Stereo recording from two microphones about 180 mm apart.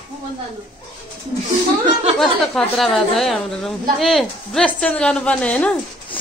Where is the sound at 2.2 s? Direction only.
Centre (ahead or behind).